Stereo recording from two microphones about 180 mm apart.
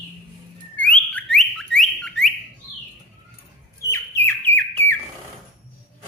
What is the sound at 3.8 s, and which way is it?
Bird, 15° left (ahead or behind).